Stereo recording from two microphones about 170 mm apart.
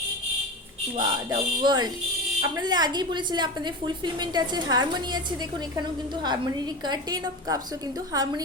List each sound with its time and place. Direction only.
0.9 s a woman's voice: 25° right (ahead or behind)
6.2 s a woman's voice: 25° right (ahead or behind)